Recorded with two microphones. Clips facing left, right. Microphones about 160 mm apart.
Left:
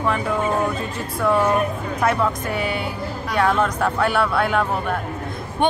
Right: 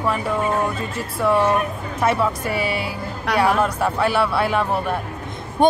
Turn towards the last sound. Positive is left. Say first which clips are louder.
# right 4 dB
turn(degrees=-40)  # may be behind; listen again after turning